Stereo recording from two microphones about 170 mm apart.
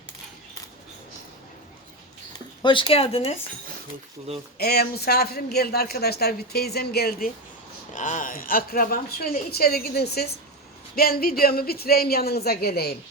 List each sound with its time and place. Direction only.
2.6 s speech: 30° left (ahead or behind)
4.5 s speech: 65° left (ahead or behind)
7.9 s a woman's voice: 45° left (ahead or behind); by 13.0 s 70° left (ahead or behind)